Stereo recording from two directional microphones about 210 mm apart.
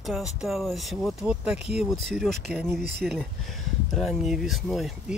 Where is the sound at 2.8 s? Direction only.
50° right (ahead or behind).